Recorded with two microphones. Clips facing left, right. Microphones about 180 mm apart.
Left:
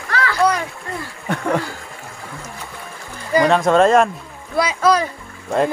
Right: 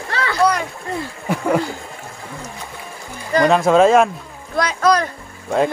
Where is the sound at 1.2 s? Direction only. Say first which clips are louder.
Right 2 dB; 5° right (ahead or behind).